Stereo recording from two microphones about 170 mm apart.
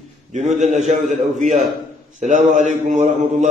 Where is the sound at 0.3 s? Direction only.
45° right (ahead or behind).